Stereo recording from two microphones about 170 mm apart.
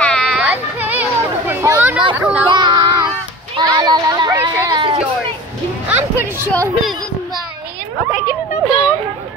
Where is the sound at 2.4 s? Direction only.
25° right (ahead or behind).